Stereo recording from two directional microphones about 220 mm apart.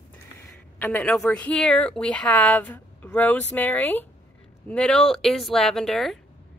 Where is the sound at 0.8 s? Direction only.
10° left (ahead or behind).